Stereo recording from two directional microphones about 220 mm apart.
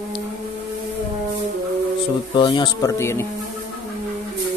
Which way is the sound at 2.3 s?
20° left (ahead or behind).